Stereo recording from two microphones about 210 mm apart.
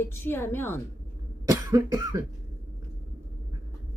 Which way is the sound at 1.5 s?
15° right (ahead or behind).